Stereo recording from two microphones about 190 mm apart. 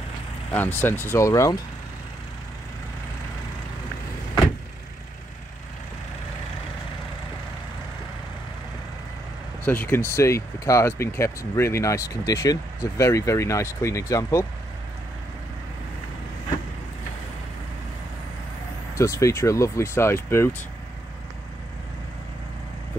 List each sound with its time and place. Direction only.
0.5 s speech: 10° left (ahead or behind)
9.7 s speech: 10° left (ahead or behind)
18.9 s speech: 15° left (ahead or behind)